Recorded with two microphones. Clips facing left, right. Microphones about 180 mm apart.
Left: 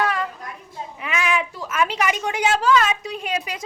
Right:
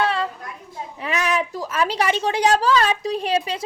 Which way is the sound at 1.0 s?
40° right (ahead or behind).